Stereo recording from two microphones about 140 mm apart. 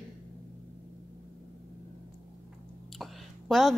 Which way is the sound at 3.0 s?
Centre (ahead or behind).